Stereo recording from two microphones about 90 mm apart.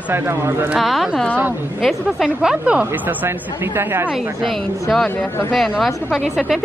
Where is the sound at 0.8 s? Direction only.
Centre (ahead or behind).